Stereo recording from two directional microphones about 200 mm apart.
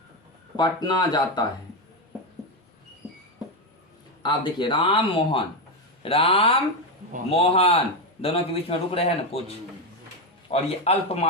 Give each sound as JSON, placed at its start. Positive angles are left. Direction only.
{"t": 0.5, "sound": "a man's voice", "side_deg": 20}
{"t": 4.2, "sound": "a man's voice", "side_deg": 25}
{"t": 10.5, "sound": "a man's voice", "side_deg": 30}